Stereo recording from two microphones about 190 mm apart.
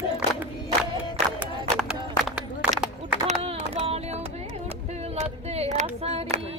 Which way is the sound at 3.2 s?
30° right (ahead or behind).